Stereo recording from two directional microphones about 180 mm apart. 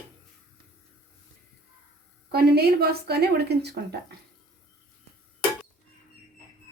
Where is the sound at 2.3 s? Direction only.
60° right (ahead or behind).